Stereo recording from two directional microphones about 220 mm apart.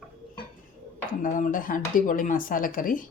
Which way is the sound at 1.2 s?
40° left (ahead or behind).